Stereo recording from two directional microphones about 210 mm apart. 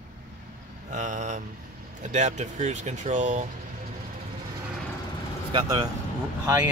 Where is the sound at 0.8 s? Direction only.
35° right (ahead or behind).